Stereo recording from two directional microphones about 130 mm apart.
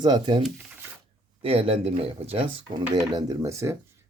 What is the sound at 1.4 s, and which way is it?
Speech, 45° right (ahead or behind).